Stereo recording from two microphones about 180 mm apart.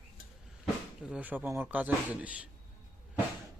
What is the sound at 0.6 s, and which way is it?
Speech, 5° right (ahead or behind).